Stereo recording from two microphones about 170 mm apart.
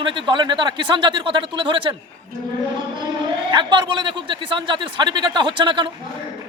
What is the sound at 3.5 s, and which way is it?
A man's voice, 25° right (ahead or behind).